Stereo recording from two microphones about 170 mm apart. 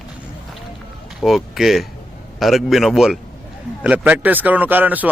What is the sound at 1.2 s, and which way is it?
Speech, centre (ahead or behind).